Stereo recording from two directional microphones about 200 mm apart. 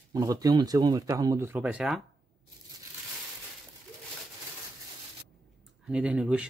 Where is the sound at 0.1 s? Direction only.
20° right (ahead or behind).